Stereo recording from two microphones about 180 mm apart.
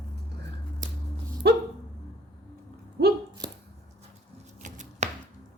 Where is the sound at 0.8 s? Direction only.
45° right (ahead or behind).